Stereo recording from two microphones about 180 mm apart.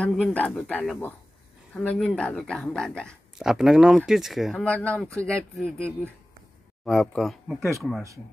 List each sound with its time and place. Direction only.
0.0 s speech: 5° left (ahead or behind)